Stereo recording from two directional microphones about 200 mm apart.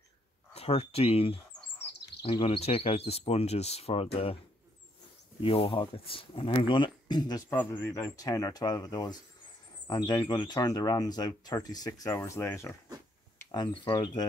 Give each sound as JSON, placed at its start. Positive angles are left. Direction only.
{"t": 0.6, "sound": "speech", "side_deg": 30}
{"t": 5.4, "sound": "speech", "side_deg": 25}